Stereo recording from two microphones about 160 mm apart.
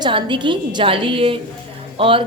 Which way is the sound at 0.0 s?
30° right (ahead or behind).